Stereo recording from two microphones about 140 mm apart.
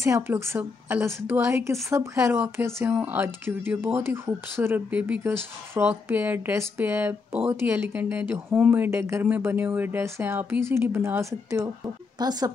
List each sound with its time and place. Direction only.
0.0 s a woman's voice: 20° right (ahead or behind)